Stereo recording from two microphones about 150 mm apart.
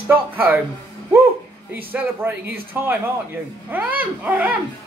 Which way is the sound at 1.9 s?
10° right (ahead or behind).